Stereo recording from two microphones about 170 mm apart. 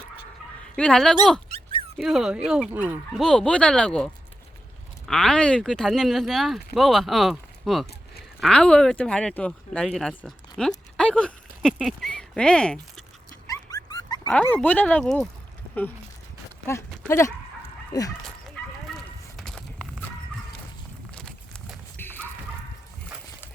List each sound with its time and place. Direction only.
0.8 s speech: 5° left (ahead or behind)
1.5 s dog: 35° right (ahead or behind)
2.0 s speech: centre (ahead or behind)
3.2 s speech: 5° left (ahead or behind)
13.5 s dog: 20° left (ahead or behind)
14.3 s speech: 5° left (ahead or behind)
17.1 s speech: 15° left (ahead or behind)
18.9 s a sound: 5° left (ahead or behind)
21.2 s horse: 5° left (ahead or behind)